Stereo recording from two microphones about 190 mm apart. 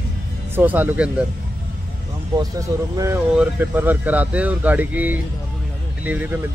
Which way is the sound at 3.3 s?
5° right (ahead or behind).